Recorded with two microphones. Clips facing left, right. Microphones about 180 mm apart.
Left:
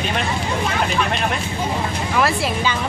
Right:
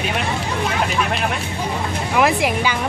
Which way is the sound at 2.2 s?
15° right (ahead or behind).